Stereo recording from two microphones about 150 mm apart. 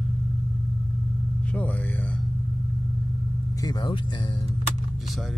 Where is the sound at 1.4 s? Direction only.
10° left (ahead or behind).